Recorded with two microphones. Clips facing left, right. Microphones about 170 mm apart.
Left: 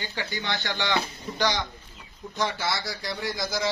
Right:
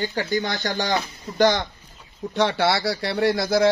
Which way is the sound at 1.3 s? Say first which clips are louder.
Right 8 dB; 50° right (ahead or behind).